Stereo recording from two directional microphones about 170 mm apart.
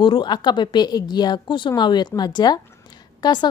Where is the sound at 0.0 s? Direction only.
25° left (ahead or behind).